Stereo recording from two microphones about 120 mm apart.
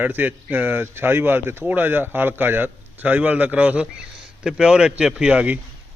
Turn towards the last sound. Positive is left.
turn(degrees=-10)  # may be behind; listen again after turning